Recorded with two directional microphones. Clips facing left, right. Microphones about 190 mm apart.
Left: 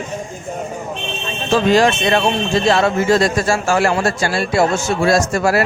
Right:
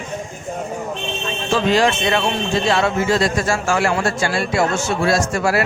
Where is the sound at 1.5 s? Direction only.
45° left (ahead or behind).